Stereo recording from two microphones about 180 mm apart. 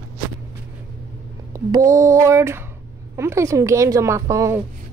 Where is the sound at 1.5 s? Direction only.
20° right (ahead or behind).